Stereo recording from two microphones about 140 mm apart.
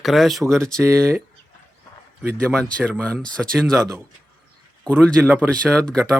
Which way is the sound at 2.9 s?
5° left (ahead or behind).